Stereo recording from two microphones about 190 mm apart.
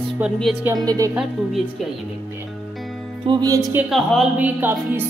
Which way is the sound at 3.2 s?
20° right (ahead or behind).